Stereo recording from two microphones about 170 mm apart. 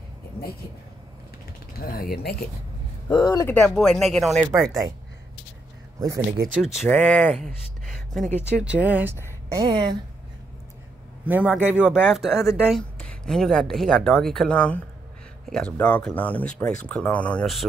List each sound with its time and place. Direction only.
1.8 s speech: 60° left (ahead or behind)
3.1 s speech: 25° left (ahead or behind)
3.4 s speech: 10° left (ahead or behind)
6.3 s speech: 60° right (ahead or behind)
6.6 s speech: centre (ahead or behind); by 9.9 s 25° right (ahead or behind)
11.2 s speech: 10° right (ahead or behind)